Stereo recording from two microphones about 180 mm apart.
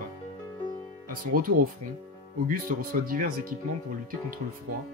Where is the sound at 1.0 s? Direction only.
50° right (ahead or behind).